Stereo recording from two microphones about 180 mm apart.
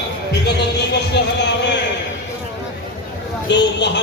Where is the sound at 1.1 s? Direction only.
75° left (ahead or behind).